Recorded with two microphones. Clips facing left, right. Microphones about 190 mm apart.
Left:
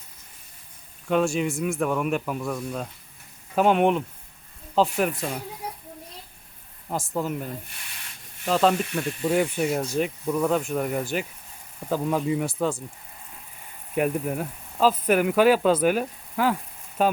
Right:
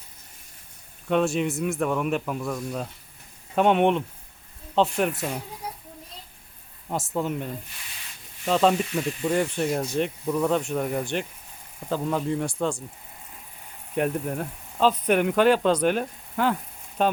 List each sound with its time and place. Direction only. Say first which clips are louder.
1.0 s speech: even; centre (ahead or behind)
6.8 s speech: even; centre (ahead or behind)
13.9 s speech: left 1 dB; 5° left (ahead or behind)